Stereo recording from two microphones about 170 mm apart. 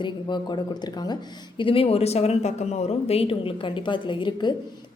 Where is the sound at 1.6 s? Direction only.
30° left (ahead or behind).